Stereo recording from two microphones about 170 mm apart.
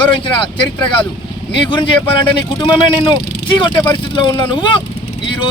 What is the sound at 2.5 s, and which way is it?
Speech, 25° left (ahead or behind).